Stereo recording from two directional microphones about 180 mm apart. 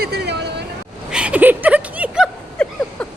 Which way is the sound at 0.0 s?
65° right (ahead or behind).